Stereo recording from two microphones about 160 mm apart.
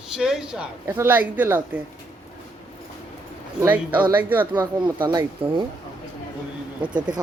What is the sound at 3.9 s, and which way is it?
Speech, 10° right (ahead or behind).